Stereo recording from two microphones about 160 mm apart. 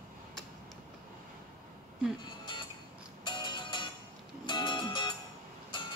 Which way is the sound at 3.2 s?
30° left (ahead or behind).